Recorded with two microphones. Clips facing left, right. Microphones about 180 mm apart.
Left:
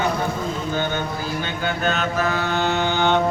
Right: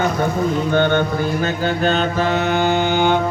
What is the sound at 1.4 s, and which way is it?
Mantra, 40° right (ahead or behind).